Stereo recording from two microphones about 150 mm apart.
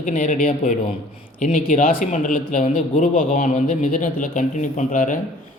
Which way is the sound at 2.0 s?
60° left (ahead or behind).